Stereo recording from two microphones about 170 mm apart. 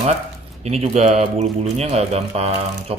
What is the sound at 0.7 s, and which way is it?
Speech, 40° right (ahead or behind).